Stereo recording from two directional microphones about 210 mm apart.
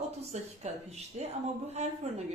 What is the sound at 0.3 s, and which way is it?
A woman's voice, 30° right (ahead or behind).